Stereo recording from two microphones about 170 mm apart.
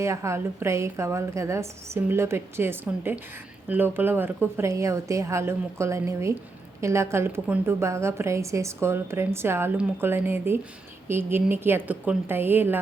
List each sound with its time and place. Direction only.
0.0 s a woman's voice: 15° right (ahead or behind)